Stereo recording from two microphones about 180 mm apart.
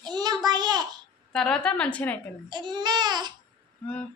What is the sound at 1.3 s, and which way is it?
Speech, 5° left (ahead or behind).